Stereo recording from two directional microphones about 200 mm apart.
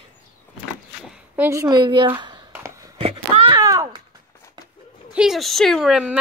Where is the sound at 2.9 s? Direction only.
30° right (ahead or behind).